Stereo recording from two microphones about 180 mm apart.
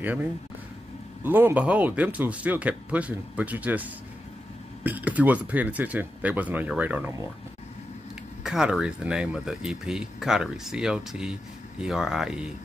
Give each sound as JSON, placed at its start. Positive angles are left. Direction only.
{"t": 0.0, "sound": "speech", "side_deg": -10}
{"t": 8.5, "sound": "speech", "side_deg": -5}